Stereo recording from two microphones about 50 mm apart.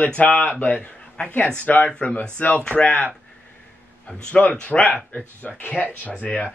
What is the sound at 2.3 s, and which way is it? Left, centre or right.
Speech, left.